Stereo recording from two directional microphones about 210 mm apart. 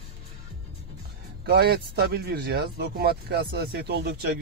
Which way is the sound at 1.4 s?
50° right (ahead or behind).